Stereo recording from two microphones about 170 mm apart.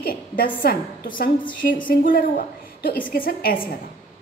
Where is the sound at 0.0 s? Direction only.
60° left (ahead or behind).